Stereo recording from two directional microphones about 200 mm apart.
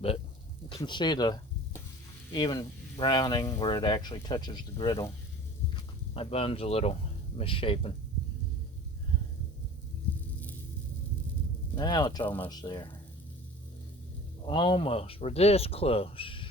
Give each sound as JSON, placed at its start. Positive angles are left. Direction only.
{"t": 0.7, "sound": "sizzle", "side_deg": 20}
{"t": 2.3, "sound": "speech", "side_deg": 20}
{"t": 6.1, "sound": "speech", "side_deg": 30}
{"t": 11.7, "sound": "speech", "side_deg": 20}
{"t": 12.2, "sound": "speech", "side_deg": 10}
{"t": 12.5, "sound": "speech", "side_deg": 20}
{"t": 14.4, "sound": "speech", "side_deg": 25}